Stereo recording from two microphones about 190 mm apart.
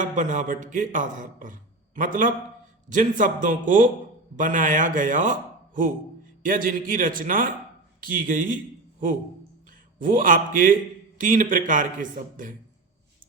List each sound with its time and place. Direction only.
0.0 s a man's voice: 40° right (ahead or behind)
10.0 s speech: 45° right (ahead or behind)